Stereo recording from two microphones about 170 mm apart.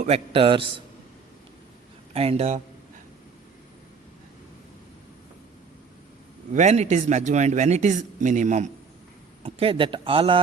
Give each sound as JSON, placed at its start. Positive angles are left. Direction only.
{"t": 0.0, "sound": "speech", "side_deg": -35}
{"t": 2.1, "sound": "speech", "side_deg": -35}
{"t": 6.5, "sound": "a man's voice", "side_deg": -45}
{"t": 9.4, "sound": "speech", "side_deg": -35}